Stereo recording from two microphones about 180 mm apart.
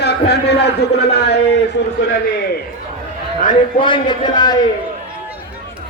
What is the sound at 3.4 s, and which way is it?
Speech, 50° left (ahead or behind).